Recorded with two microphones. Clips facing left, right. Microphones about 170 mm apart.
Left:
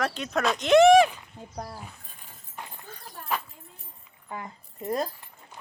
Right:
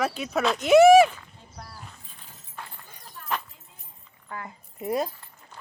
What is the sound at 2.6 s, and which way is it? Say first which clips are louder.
Clip-clop: left 1 dB; 15° left (ahead or behind).